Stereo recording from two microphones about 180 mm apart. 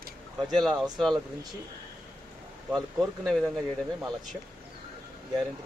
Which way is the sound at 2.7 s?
Centre (ahead or behind).